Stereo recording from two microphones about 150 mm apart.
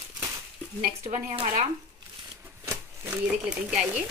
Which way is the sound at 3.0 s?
5° right (ahead or behind).